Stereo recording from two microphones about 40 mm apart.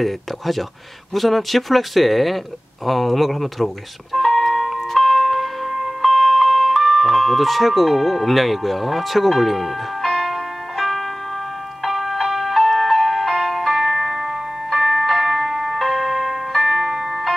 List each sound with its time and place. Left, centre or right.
0.0 s speech: centre
2.9 s music: centre
6.1 s ice cream truck: centre
11.8 s music: centre